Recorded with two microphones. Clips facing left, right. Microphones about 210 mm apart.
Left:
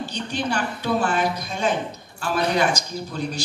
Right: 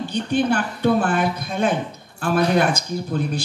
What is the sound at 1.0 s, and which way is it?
Speech, 55° right (ahead or behind).